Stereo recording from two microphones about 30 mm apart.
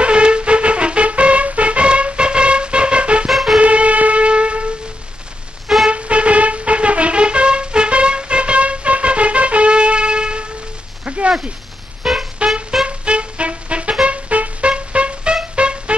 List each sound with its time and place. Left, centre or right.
0.0 s music: right
3.3 s music: centre
3.6 s wind instrument: right
5.9 s music: right
11.1 s a sound: right
12.0 s music: centre
12.4 s music: right